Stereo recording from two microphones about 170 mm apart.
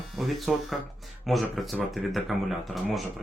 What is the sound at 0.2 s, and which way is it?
Speech, centre (ahead or behind).